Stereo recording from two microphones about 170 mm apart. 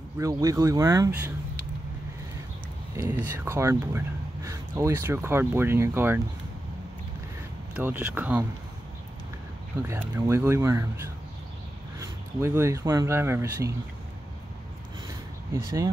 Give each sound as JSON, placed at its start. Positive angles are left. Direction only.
{"t": 0.2, "sound": "speech", "side_deg": -20}
{"t": 3.0, "sound": "speech", "side_deg": -15}
{"t": 7.7, "sound": "speech", "side_deg": -10}
{"t": 9.8, "sound": "speech", "side_deg": -15}
{"t": 12.0, "sound": "speech", "side_deg": -15}
{"t": 15.0, "sound": "a sound", "side_deg": -20}